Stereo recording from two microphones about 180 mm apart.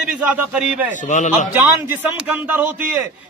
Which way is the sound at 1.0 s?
45° left (ahead or behind).